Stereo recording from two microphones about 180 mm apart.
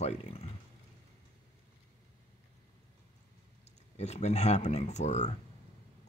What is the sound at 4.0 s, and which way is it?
Speech, 40° left (ahead or behind).